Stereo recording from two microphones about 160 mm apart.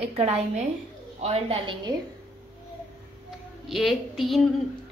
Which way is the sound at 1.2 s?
40° right (ahead or behind).